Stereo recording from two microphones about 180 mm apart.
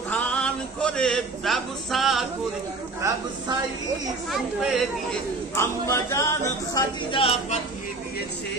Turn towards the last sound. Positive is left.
turn(degrees=35)  # may be behind; listen again after turning